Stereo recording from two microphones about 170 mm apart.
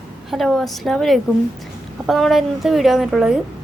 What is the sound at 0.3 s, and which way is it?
A woman's voice, centre (ahead or behind).